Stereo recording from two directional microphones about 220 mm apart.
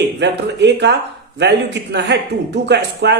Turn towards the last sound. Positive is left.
turn(degrees=-50)  # may be behind; listen again after turning